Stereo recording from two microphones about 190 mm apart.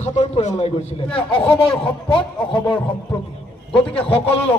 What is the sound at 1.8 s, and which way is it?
Speech, 25° left (ahead or behind).